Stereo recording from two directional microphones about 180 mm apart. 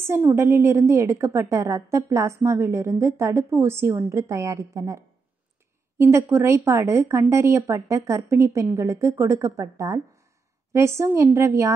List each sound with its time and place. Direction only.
0.0 s a woman's voice: 10° right (ahead or behind)